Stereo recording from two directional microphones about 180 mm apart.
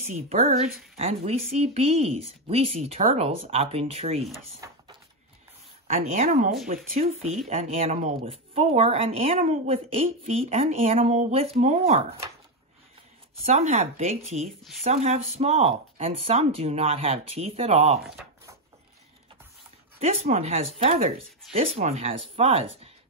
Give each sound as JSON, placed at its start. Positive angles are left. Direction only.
{"t": 0.0, "sound": "speech", "side_deg": -35}
{"t": 4.6, "sound": "a sound", "side_deg": -20}
{"t": 5.9, "sound": "speech", "side_deg": -50}
{"t": 7.4, "sound": "speech", "side_deg": -35}
{"t": 13.5, "sound": "speech", "side_deg": -40}
{"t": 20.0, "sound": "speech", "side_deg": -35}